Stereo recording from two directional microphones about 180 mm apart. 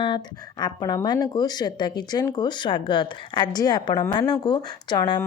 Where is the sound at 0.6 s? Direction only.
20° left (ahead or behind).